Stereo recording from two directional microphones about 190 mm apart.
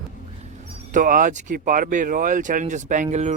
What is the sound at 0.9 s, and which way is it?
Speech, 45° right (ahead or behind).